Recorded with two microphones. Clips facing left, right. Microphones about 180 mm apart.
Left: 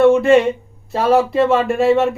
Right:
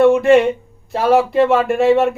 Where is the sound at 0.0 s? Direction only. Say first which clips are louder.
Even; centre (ahead or behind).